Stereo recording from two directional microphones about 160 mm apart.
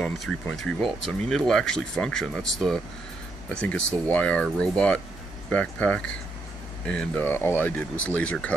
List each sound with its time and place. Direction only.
0.0 s speech: 5° left (ahead or behind)